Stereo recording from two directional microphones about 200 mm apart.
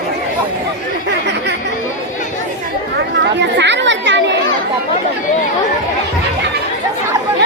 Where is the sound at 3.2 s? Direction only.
60° right (ahead or behind).